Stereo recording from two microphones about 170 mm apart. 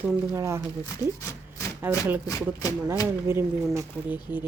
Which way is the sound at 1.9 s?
10° right (ahead or behind).